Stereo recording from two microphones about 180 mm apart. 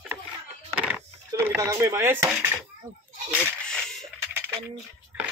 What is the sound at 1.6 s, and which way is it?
Speech, 15° right (ahead or behind).